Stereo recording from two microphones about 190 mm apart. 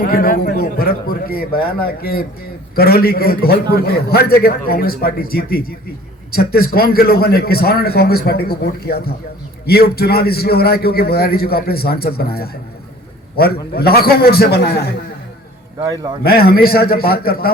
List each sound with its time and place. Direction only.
0.0 s a man's voice: 50° left (ahead or behind)
16.2 s a man's voice: 55° left (ahead or behind)